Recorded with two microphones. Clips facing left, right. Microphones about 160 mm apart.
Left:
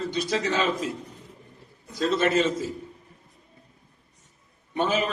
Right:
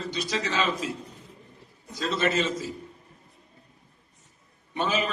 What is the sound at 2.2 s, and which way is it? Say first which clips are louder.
Speech: left 2 dB; 50° left (ahead or behind).